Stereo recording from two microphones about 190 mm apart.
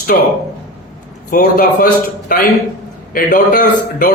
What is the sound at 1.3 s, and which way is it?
A man's voice, 50° left (ahead or behind).